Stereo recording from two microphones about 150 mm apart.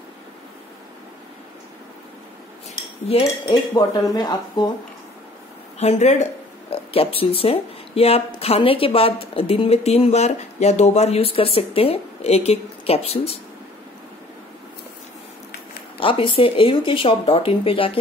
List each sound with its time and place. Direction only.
3.4 s speech: 25° left (ahead or behind)
5.8 s speech: 50° left (ahead or behind)
6.7 s speech: 40° left (ahead or behind)
16.0 s speech: 35° left (ahead or behind)